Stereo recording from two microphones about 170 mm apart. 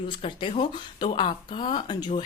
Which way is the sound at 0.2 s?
30° left (ahead or behind).